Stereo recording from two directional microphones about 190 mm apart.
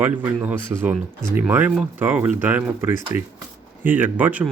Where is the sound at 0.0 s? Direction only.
10° right (ahead or behind).